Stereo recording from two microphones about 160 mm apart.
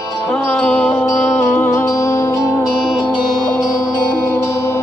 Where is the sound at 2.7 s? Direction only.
Centre (ahead or behind).